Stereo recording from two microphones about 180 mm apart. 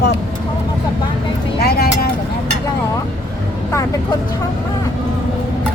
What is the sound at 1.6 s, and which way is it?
Speech, 60° left (ahead or behind).